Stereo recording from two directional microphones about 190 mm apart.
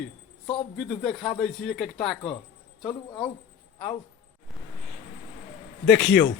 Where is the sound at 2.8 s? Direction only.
25° left (ahead or behind).